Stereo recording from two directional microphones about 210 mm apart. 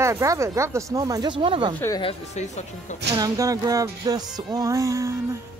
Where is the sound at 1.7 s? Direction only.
10° left (ahead or behind).